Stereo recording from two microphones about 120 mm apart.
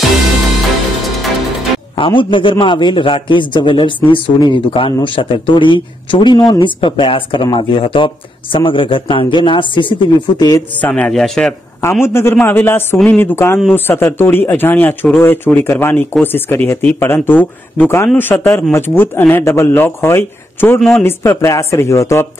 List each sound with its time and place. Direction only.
2.0 s a man's voice: 45° left (ahead or behind)
10.8 s speech: 10° left (ahead or behind)
11.8 s a man's voice: 20° left (ahead or behind)